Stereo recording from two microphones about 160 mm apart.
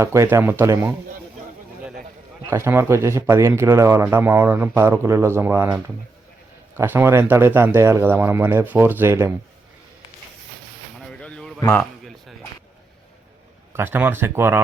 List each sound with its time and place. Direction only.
0.0 s speech: 20° right (ahead or behind)
2.5 s speech: 15° right (ahead or behind)
11.1 s a sound: 5° left (ahead or behind)
13.7 s speech: 15° right (ahead or behind)